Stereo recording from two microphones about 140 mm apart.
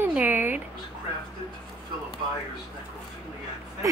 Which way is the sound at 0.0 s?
10° right (ahead or behind).